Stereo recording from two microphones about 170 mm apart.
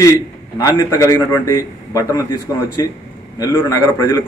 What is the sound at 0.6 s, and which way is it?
A man's voice, 20° left (ahead or behind).